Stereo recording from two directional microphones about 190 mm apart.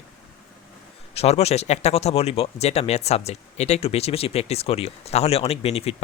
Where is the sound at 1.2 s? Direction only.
35° left (ahead or behind).